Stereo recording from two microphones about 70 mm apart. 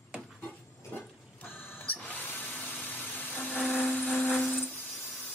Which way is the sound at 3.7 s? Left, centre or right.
Left.